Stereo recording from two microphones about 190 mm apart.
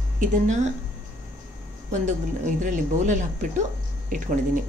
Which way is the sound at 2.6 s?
40° right (ahead or behind).